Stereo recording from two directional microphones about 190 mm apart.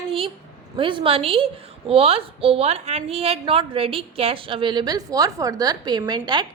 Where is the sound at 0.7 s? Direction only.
25° right (ahead or behind).